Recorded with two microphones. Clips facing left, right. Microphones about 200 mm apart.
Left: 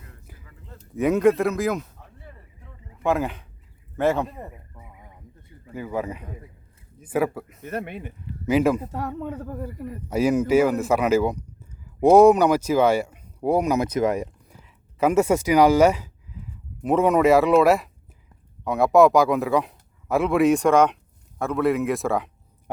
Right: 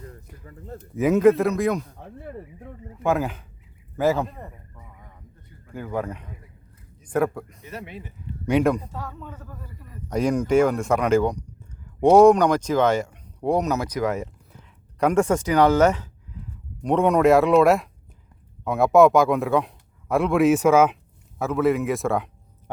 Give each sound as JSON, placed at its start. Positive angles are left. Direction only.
{"t": 0.4, "sound": "speech", "side_deg": -45}
{"t": 0.9, "sound": "speech", "side_deg": 0}
{"t": 2.0, "sound": "a sound", "side_deg": -55}
{"t": 3.0, "sound": "speech", "side_deg": 0}
{"t": 4.4, "sound": "a sound", "side_deg": 15}
{"t": 5.7, "sound": "speech", "side_deg": 5}
{"t": 7.6, "sound": "speech", "side_deg": 55}
{"t": 8.4, "sound": "speech", "side_deg": 5}
{"t": 9.0, "sound": "speech", "side_deg": 65}
{"t": 10.1, "sound": "speech", "side_deg": 5}
{"t": 13.8, "sound": "speech", "side_deg": 20}
{"t": 14.9, "sound": "speech", "side_deg": 5}
{"t": 16.4, "sound": "a sound", "side_deg": 5}
{"t": 16.8, "sound": "a man's voice", "side_deg": 0}